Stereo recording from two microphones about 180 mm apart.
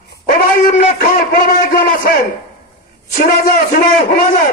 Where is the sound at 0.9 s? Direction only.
55° left (ahead or behind).